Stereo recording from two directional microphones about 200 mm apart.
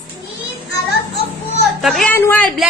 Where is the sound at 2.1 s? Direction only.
10° left (ahead or behind).